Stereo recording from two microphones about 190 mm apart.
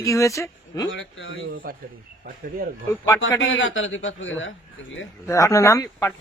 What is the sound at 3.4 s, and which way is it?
A man's voice, 90° left.